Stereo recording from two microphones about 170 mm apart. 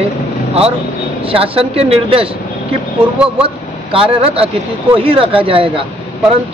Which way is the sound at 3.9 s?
35° right (ahead or behind).